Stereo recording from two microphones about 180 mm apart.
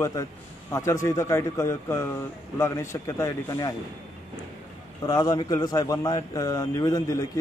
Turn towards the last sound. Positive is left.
turn(degrees=20)  # may be behind; listen again after turning